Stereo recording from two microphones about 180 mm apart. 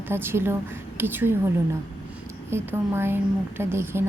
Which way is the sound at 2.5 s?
15° right (ahead or behind).